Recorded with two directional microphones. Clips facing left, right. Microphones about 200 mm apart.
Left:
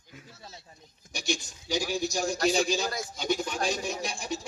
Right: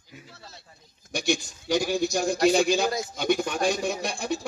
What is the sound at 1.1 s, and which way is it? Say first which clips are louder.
Speech: right 6 dB; 60° right (ahead or behind).